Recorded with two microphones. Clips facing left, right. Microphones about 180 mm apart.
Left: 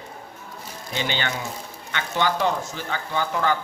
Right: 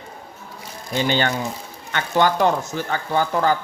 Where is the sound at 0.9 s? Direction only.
45° right (ahead or behind).